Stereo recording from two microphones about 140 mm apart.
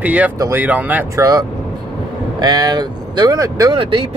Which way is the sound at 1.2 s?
25° right (ahead or behind).